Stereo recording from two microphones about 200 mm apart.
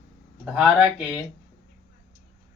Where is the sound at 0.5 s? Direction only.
5° right (ahead or behind).